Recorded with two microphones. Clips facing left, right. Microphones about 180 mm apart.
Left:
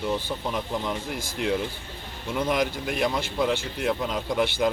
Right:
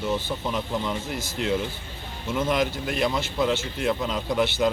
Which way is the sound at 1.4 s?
Centre (ahead or behind).